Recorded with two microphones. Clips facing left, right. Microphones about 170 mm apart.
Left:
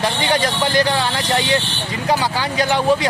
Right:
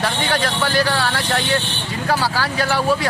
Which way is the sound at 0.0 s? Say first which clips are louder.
Left 2 dB; 10° left (ahead or behind).